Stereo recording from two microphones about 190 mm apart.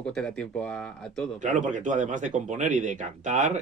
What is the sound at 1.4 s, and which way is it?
Speech, 40° right (ahead or behind).